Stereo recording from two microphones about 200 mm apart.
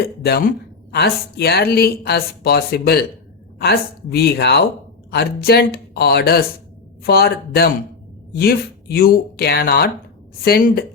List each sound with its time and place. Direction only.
0.0 s speech: 50° left (ahead or behind)